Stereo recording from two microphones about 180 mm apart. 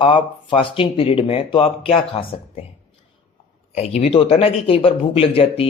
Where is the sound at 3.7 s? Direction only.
35° left (ahead or behind).